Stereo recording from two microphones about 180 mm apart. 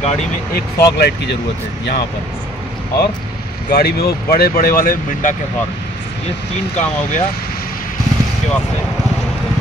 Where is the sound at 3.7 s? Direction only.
55° left (ahead or behind).